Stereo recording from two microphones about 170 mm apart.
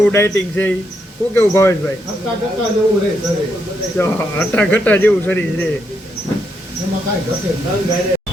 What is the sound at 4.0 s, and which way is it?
Speech, 10° left (ahead or behind).